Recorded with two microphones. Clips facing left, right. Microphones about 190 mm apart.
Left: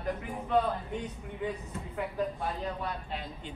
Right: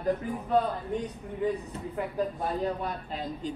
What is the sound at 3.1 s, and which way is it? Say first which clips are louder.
Speech: right 6 dB; 40° right (ahead or behind).